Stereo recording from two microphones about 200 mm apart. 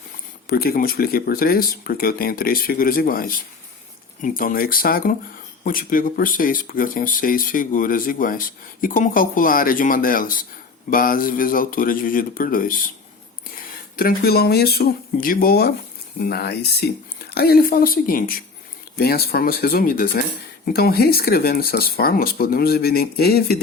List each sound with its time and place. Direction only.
0.4 s speech: 50° left (ahead or behind)